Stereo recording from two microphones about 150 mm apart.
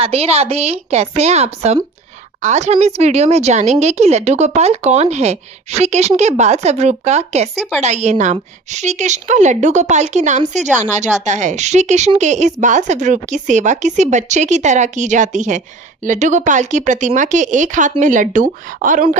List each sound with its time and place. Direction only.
0.0 s a woman's voice: 40° right (ahead or behind); by 19.0 s 60° right (ahead or behind)